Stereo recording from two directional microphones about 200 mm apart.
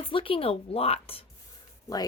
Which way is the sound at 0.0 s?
25° left (ahead or behind).